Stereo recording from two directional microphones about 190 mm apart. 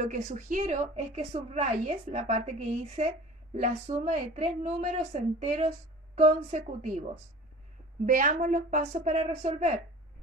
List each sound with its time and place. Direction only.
0.0 s a woman's voice: 40° right (ahead or behind)